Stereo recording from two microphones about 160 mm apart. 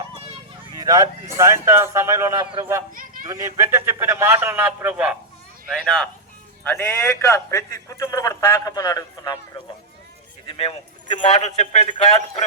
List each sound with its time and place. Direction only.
0.7 s a sound: 25° right (ahead or behind)
1.4 s speech: 15° right (ahead or behind)
2.9 s a sound: 55° right (ahead or behind)
3.2 s speech: 20° right (ahead or behind)
5.6 s speech: centre (ahead or behind)
6.7 s a man's voice: 15° left (ahead or behind)
10.4 s speech: 35° left (ahead or behind)
11.3 s a man's voice: 45° left (ahead or behind)